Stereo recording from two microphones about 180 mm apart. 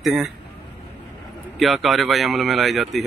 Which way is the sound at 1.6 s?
Centre (ahead or behind).